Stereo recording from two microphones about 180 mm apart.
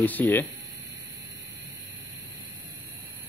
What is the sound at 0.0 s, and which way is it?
Speech, 10° left (ahead or behind).